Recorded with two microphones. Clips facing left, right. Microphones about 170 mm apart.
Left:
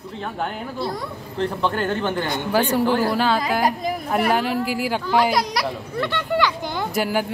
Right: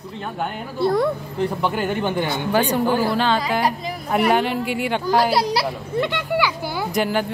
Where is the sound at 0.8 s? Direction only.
55° right (ahead or behind).